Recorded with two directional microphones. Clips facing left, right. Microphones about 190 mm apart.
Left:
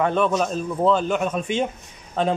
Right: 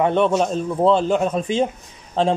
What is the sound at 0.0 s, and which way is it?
Speech, 25° right (ahead or behind).